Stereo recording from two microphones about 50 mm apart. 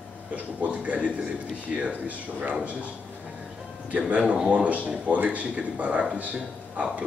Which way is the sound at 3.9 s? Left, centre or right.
Right.